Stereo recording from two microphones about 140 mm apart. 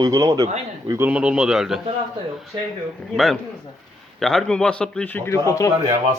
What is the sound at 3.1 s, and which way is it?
A man's voice, centre (ahead or behind).